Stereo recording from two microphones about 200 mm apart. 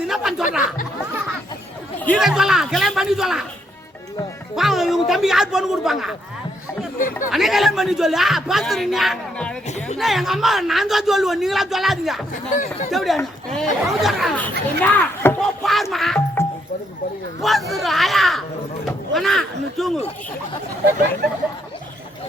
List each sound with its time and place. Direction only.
0.1 s snicker: centre (ahead or behind)
2.1 s a man's voice: 5° right (ahead or behind)
4.5 s a man's voice: centre (ahead or behind)
7.3 s a man's voice: centre (ahead or behind)
9.6 s speech: 35° left (ahead or behind)
10.0 s a man's voice: centre (ahead or behind)
12.3 s speech: 40° left (ahead or behind)
12.9 s a man's voice: centre (ahead or behind)
21.2 s speech: 50° right (ahead or behind)